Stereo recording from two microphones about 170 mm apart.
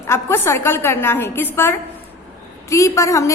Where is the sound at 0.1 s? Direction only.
15° left (ahead or behind).